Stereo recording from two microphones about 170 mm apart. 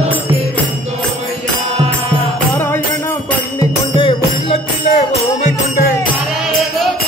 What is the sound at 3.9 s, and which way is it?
Music, 30° left (ahead or behind).